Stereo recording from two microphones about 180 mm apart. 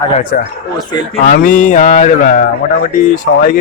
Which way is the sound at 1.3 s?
50° left (ahead or behind).